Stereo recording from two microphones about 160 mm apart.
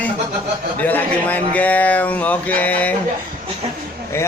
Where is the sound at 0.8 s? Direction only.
10° left (ahead or behind).